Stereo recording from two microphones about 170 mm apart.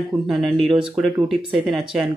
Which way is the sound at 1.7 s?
Centre (ahead or behind).